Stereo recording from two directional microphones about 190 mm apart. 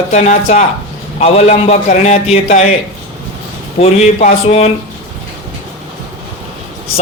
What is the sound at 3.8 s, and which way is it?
Speech, 35° left (ahead or behind).